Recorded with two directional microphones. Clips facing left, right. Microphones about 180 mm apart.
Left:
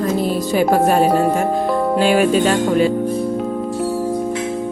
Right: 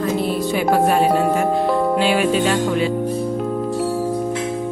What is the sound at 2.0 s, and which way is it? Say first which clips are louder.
Music: left 3 dB; 45° left (ahead or behind).